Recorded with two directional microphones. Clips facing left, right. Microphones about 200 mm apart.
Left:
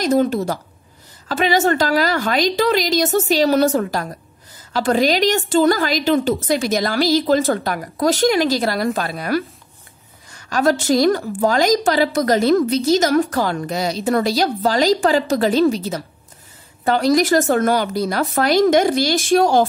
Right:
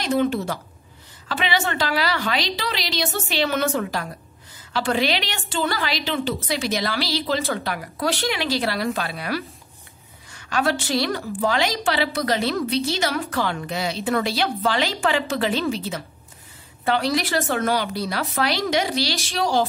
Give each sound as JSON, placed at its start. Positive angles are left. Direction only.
{"t": 0.0, "sound": "a woman's voice", "side_deg": 40}